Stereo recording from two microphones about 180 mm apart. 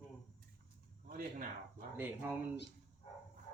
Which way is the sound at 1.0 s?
50° right (ahead or behind).